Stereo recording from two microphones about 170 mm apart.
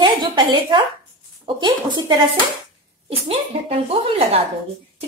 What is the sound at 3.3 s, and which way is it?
Speech, 35° right (ahead or behind).